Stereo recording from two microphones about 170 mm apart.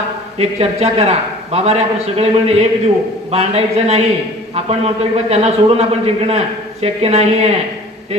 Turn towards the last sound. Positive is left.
turn(degrees=-40)  # may be behind; listen again after turning